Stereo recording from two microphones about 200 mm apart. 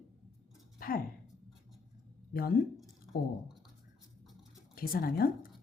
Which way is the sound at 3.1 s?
45° left (ahead or behind).